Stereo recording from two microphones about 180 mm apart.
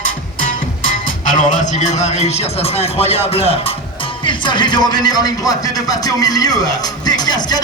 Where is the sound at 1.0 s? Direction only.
45° left (ahead or behind).